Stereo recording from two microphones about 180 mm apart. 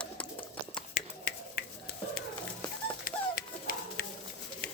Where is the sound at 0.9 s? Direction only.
45° left (ahead or behind).